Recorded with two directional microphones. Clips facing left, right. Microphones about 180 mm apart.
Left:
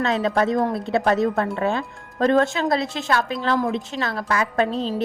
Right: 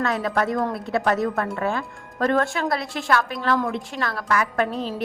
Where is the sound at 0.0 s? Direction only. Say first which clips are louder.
Left 3 dB; 25° left (ahead or behind).